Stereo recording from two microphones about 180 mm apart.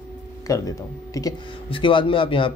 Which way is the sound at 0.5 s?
20° left (ahead or behind).